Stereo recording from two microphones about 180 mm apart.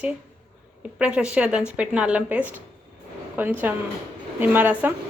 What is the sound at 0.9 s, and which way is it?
Speech, 5° right (ahead or behind).